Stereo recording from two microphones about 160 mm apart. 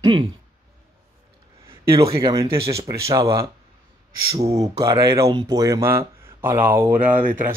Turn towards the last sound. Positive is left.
turn(degrees=-15)  # may be behind; listen again after turning